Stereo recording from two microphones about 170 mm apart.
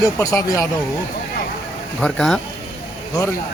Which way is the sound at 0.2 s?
20° left (ahead or behind).